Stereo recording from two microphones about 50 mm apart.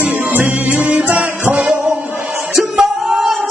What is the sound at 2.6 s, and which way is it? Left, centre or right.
Music, centre.